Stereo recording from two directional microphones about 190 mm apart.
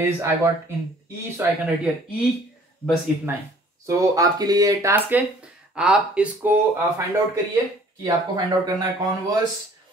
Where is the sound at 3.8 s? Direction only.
20° right (ahead or behind).